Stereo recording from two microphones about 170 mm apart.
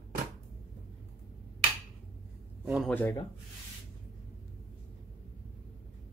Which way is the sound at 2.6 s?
5° right (ahead or behind).